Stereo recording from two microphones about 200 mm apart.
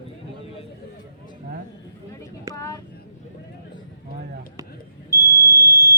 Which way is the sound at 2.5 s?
15° left (ahead or behind).